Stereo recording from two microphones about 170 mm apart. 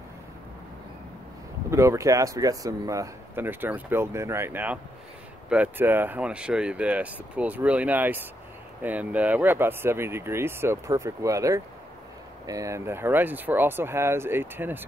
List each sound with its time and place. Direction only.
1.7 s speech: 15° right (ahead or behind)